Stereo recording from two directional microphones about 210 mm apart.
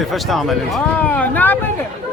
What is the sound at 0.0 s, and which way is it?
Speech, centre (ahead or behind).